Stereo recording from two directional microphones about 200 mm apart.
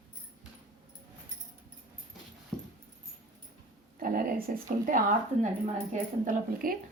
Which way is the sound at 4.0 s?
45° right (ahead or behind).